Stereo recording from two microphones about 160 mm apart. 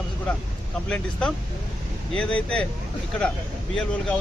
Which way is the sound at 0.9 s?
5° left (ahead or behind).